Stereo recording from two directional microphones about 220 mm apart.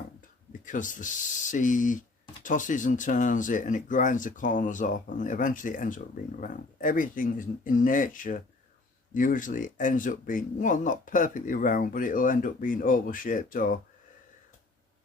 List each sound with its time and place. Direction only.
0.6 s speech: 35° left (ahead or behind)